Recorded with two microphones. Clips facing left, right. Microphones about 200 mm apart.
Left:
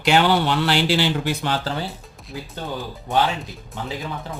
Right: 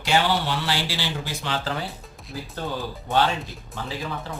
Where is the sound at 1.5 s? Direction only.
30° left (ahead or behind).